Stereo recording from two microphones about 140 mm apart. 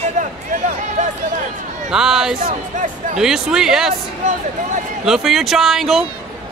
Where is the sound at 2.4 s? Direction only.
65° right (ahead or behind).